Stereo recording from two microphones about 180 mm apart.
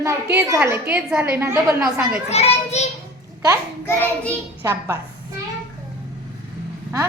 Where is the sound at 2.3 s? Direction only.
35° left (ahead or behind).